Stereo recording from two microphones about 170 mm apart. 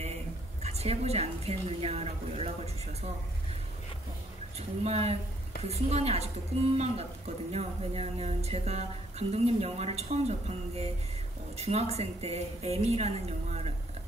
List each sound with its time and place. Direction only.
0.6 s a woman's voice: 40° right (ahead or behind)
4.6 s a woman's voice: 40° right (ahead or behind)